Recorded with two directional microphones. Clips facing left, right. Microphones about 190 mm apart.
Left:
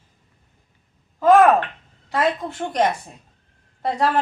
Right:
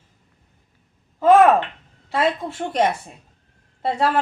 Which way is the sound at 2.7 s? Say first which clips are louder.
Even; 5° right (ahead or behind).